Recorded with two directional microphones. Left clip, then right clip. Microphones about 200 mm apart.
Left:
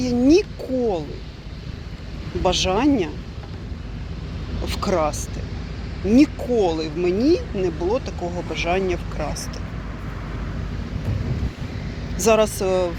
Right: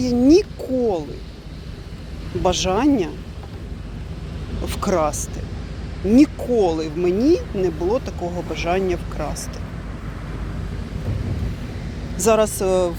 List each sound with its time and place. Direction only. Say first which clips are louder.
0.0 s a sound: right 2 dB; 20° right (ahead or behind)
2.4 s speech: right 1 dB; 15° right (ahead or behind)
4.6 s speech: right 1 dB; 15° right (ahead or behind)
12.1 s speech: even; 10° right (ahead or behind)